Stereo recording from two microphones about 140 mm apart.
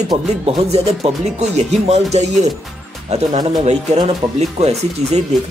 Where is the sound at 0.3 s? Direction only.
50° right (ahead or behind).